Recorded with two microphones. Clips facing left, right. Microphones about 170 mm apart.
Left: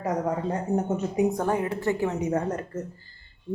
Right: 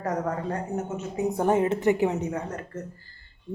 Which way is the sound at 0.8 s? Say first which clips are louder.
Left 4 dB; 35° left (ahead or behind).